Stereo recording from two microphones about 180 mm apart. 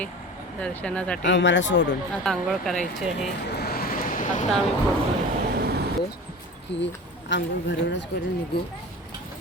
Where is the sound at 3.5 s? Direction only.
60° left (ahead or behind).